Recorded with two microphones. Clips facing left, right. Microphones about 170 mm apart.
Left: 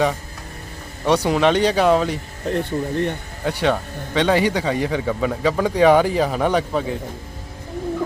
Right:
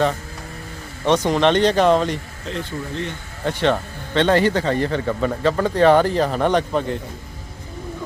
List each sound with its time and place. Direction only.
1.0 s speech: 10° left (ahead or behind)
2.5 s speech: 60° left (ahead or behind)
3.4 s speech: 10° left (ahead or behind)